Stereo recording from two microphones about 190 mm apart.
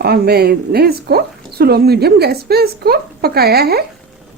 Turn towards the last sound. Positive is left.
turn(degrees=-55)  # may be behind; listen again after turning